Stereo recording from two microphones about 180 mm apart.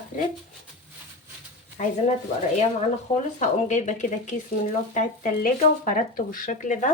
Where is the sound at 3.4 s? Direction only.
40° left (ahead or behind).